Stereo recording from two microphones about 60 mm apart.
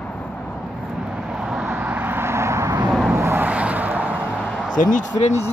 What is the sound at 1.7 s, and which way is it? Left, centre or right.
Vehicle, right.